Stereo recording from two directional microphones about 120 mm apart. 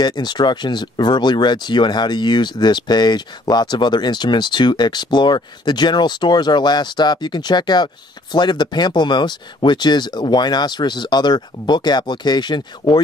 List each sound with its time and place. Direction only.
0.0 s speech: 35° left (ahead or behind)